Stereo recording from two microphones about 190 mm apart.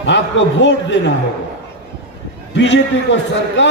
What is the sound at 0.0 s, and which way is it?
Speech, 70° left (ahead or behind).